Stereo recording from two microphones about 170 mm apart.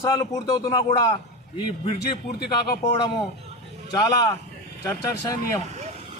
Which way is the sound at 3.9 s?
20° left (ahead or behind).